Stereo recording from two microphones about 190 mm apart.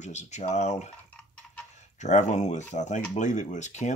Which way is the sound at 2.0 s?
40° left (ahead or behind).